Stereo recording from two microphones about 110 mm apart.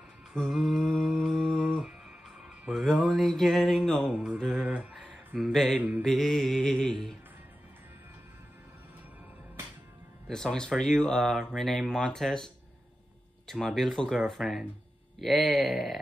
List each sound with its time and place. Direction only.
0.3 s speech: centre (ahead or behind)
0.9 s humming: centre (ahead or behind)
1.7 s music: centre (ahead or behind)
4.1 s music: 10° right (ahead or behind)
4.4 s mantra: centre (ahead or behind)
4.6 s a sound: 10° right (ahead or behind)
5.4 s speech: 5° left (ahead or behind)
5.8 s mantra: 15° right (ahead or behind)
6.0 s speech: centre (ahead or behind)
10.2 s speech: 5° left (ahead or behind)
13.5 s speech: 5° left (ahead or behind)